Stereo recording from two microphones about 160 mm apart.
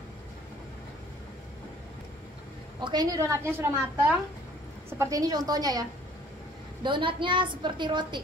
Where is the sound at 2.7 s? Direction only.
25° right (ahead or behind).